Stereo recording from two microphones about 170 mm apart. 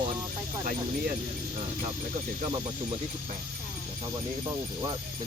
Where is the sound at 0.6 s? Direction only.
60° right (ahead or behind).